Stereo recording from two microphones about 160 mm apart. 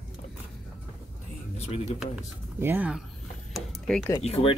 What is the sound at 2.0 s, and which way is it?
Speech, 10° right (ahead or behind).